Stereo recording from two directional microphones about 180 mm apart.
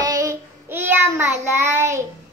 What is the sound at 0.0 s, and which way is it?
Child singing, 15° right (ahead or behind).